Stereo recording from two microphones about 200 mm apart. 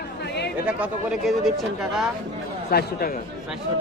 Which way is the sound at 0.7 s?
5° right (ahead or behind).